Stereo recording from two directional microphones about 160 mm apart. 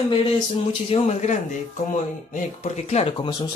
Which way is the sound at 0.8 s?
40° left (ahead or behind).